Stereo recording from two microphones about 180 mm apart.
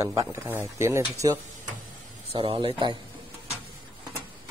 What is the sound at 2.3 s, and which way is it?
Speech, 30° right (ahead or behind).